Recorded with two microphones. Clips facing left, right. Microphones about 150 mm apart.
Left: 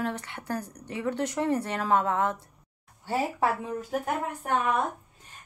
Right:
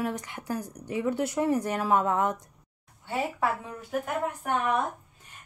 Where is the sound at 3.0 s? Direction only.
35° left (ahead or behind).